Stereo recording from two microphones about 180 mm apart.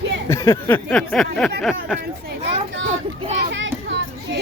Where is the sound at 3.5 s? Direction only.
90° right.